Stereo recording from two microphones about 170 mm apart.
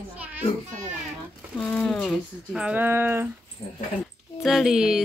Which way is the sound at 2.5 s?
10° right (ahead or behind).